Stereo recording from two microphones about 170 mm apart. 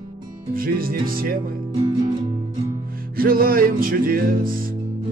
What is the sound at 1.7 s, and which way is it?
Music, 25° right (ahead or behind).